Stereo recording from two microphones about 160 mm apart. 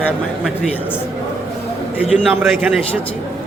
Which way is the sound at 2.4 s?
10° right (ahead or behind).